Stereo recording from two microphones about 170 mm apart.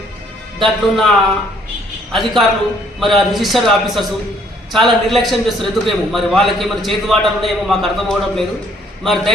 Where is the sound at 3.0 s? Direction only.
Centre (ahead or behind).